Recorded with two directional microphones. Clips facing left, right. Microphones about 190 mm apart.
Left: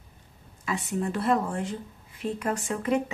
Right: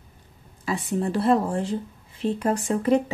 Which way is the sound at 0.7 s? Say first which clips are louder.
Right 4 dB; 35° right (ahead or behind).